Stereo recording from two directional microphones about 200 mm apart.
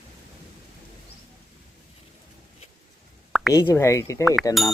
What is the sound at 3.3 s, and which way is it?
Plop, centre (ahead or behind).